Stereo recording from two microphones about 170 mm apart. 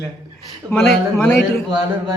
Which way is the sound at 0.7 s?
5° left (ahead or behind).